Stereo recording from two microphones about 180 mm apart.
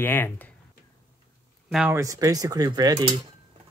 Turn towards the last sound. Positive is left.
turn(degrees=-20)  # may be behind; listen again after turning